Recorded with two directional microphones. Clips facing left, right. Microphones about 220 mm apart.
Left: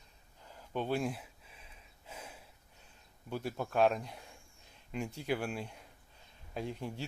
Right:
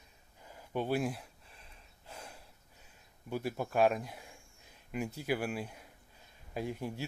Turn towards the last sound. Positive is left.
turn(degrees=-10)  # may be behind; listen again after turning